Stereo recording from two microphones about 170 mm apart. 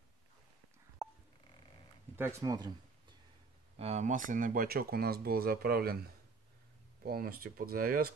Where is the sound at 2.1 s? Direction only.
15° right (ahead or behind).